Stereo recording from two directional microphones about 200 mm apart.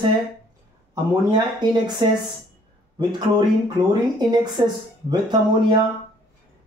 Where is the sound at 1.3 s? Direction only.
20° right (ahead or behind).